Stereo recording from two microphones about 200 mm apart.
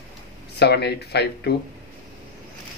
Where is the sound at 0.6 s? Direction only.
55° left (ahead or behind).